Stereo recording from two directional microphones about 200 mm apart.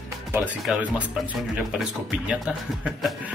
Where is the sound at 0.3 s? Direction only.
5° right (ahead or behind).